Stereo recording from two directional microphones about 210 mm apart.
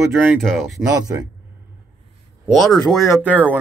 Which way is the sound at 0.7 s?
15° right (ahead or behind).